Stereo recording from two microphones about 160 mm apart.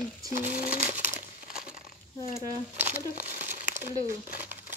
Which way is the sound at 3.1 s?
50° right (ahead or behind).